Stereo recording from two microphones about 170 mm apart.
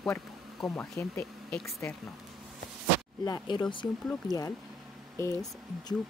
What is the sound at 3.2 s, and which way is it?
Speech, 25° left (ahead or behind).